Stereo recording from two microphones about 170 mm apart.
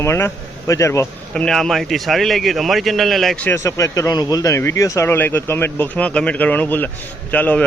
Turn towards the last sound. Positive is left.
turn(degrees=10)  # may be behind; listen again after turning